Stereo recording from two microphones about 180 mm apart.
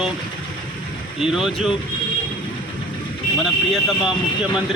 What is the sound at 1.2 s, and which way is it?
Speech, centre (ahead or behind).